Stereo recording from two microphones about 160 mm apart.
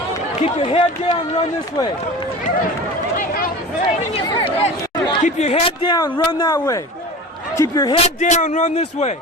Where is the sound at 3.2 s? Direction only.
65° left (ahead or behind).